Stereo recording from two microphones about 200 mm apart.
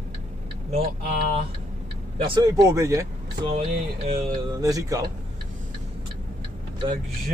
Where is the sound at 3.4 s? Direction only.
30° right (ahead or behind).